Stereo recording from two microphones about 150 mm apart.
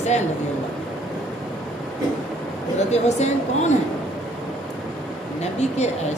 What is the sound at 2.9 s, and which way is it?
Speech, 50° left (ahead or behind).